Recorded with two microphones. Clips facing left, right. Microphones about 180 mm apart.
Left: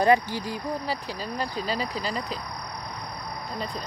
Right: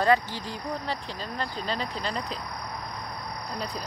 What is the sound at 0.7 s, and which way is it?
Speech, 5° left (ahead or behind).